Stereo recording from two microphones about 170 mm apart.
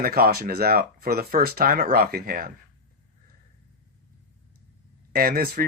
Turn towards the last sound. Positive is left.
turn(degrees=-60)  # may be behind; listen again after turning